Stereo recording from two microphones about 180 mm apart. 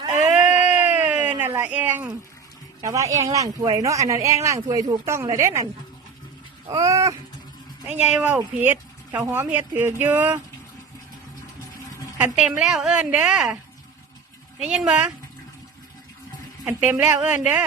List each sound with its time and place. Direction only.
0.2 s a sound: 10° right (ahead or behind)
2.8 s speech: 20° right (ahead or behind)
6.7 s cat: 20° right (ahead or behind)
7.9 s speech: 10° right (ahead or behind)
12.1 s a woman's voice: 5° right (ahead or behind)
14.6 s a woman's voice: 5° right (ahead or behind)
16.6 s speech: 10° right (ahead or behind)